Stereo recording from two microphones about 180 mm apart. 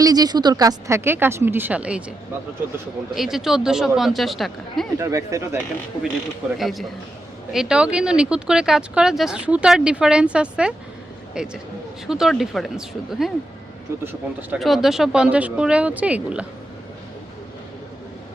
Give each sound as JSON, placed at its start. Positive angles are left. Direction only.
{"t": 0.0, "sound": "a woman's voice", "side_deg": -20}
{"t": 3.2, "sound": "speech", "side_deg": 0}
{"t": 4.9, "sound": "a woman's voice", "side_deg": -15}
{"t": 6.6, "sound": "speech", "side_deg": 0}
{"t": 14.0, "sound": "a woman's voice", "side_deg": -10}
{"t": 14.6, "sound": "speech", "side_deg": 0}